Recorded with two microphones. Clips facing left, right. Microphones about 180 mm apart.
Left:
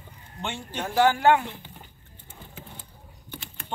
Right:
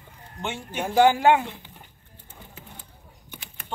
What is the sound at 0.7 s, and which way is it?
Speech, 15° right (ahead or behind).